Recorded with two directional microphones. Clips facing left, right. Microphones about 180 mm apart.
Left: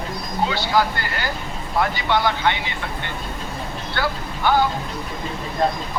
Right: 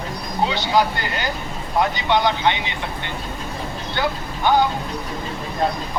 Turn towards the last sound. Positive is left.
turn(degrees=-20)  # may be behind; listen again after turning